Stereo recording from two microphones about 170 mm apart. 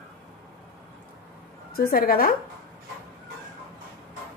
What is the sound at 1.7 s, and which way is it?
Speech, 60° left (ahead or behind).